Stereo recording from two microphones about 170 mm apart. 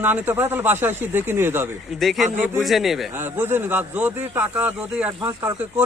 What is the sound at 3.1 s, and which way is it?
A man's voice, 10° right (ahead or behind).